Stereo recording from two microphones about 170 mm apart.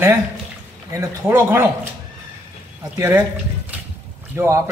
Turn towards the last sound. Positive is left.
turn(degrees=-15)  # may be behind; listen again after turning